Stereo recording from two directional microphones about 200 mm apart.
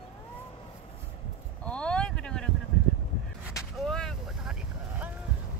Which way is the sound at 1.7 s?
5° left (ahead or behind).